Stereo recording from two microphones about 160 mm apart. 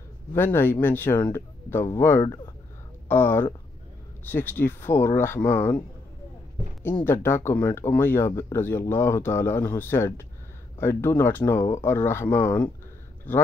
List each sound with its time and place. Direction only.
0.3 s speech: 15° left (ahead or behind)
7.1 s speech: 15° left (ahead or behind)